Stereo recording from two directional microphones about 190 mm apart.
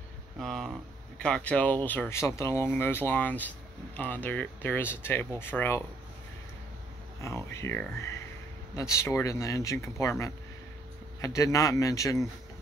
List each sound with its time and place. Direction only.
0.4 s speech: centre (ahead or behind)
7.2 s speech: 15° left (ahead or behind)